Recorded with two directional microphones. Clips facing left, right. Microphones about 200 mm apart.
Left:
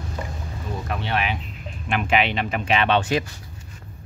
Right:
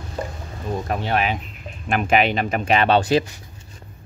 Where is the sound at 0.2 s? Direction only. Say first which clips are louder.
Right 5 dB; 35° right (ahead or behind).